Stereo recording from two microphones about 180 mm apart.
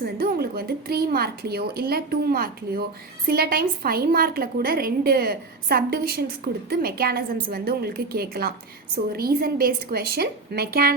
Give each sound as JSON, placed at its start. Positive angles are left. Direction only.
{"t": 0.0, "sound": "a woman's voice", "side_deg": -60}